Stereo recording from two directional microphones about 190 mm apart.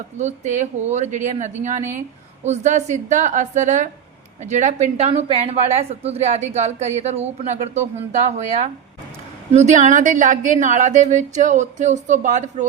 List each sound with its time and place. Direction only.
0.2 s a woman's voice: 40° right (ahead or behind)